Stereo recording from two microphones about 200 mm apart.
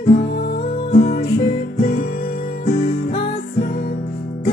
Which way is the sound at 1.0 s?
50° left (ahead or behind).